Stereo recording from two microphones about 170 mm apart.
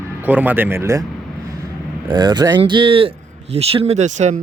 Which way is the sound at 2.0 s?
25° right (ahead or behind).